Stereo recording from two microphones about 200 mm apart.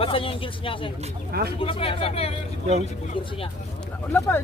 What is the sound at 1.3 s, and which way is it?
Speech, 55° right (ahead or behind).